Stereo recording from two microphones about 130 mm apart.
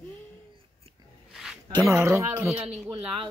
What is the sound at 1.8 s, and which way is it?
Speech, 20° right (ahead or behind).